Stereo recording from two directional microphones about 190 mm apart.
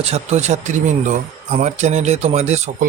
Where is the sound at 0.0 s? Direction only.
35° right (ahead or behind).